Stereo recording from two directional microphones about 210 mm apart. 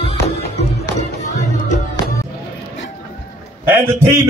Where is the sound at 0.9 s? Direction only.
35° left (ahead or behind).